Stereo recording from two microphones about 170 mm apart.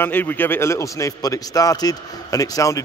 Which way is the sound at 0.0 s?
10° left (ahead or behind).